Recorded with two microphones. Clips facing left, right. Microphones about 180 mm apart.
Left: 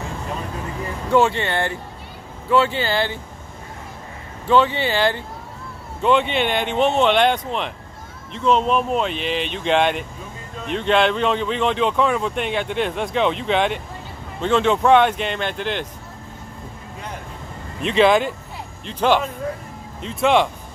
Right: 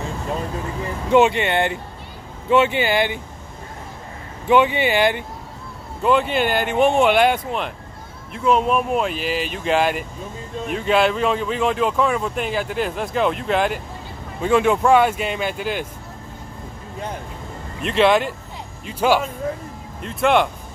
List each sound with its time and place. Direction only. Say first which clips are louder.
1.1 s speech: right 2 dB; 20° right (ahead or behind)
4.5 s speech: right 1 dB; 15° right (ahead or behind)
6.0 s speech: even; 5° right (ahead or behind)
17.8 s speech: left 1 dB; centre (ahead or behind)